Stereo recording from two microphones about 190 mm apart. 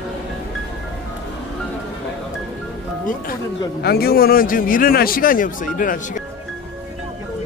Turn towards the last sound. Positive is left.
turn(degrees=45)  # may be behind; listen again after turning